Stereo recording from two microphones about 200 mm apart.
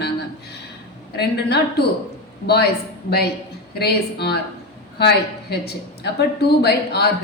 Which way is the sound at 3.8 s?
55° left (ahead or behind).